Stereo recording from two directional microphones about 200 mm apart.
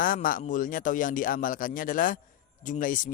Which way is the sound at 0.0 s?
45° left (ahead or behind).